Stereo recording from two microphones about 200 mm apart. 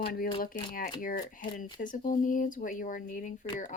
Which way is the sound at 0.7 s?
45° left (ahead or behind).